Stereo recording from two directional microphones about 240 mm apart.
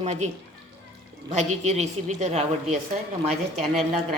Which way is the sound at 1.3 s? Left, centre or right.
Right.